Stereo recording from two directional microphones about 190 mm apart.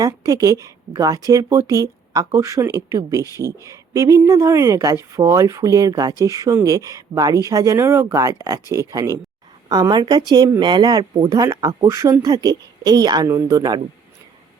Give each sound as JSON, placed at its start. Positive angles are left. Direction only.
{"t": 0.0, "sound": "speech", "side_deg": -20}